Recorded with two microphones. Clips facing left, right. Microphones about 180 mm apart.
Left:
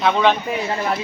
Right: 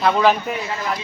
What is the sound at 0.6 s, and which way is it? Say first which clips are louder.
Speech: left 3 dB; 30° left (ahead or behind).